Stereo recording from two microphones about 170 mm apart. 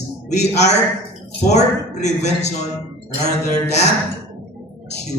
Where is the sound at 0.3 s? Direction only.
40° left (ahead or behind).